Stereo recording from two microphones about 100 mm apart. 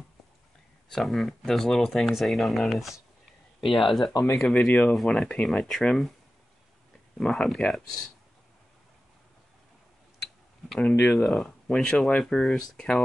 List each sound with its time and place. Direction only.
0.8 s speech: 5° left (ahead or behind)
4.1 s speech: 40° left (ahead or behind)
4.4 s speech: 5° left (ahead or behind)
7.2 s speech: 5° left (ahead or behind)
10.7 s speech: 10° left (ahead or behind)